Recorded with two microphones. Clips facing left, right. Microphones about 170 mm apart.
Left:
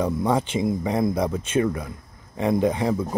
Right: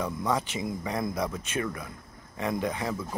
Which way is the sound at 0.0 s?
30° left (ahead or behind).